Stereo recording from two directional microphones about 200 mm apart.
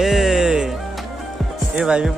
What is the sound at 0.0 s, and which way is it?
Music, centre (ahead or behind).